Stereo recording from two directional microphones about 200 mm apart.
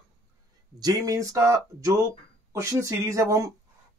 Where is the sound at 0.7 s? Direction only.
20° right (ahead or behind).